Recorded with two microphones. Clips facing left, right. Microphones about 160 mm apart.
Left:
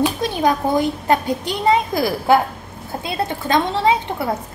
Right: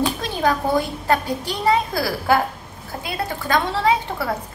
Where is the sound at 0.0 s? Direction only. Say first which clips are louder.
Left 3 dB; 15° left (ahead or behind).